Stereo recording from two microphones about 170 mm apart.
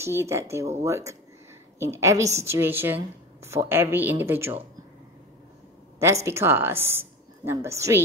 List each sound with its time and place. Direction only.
0.0 s a woman's voice: 15° right (ahead or behind)
6.2 s a woman's voice: 15° right (ahead or behind)